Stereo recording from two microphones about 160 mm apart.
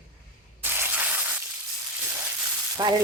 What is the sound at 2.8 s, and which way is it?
Speech, 25° right (ahead or behind).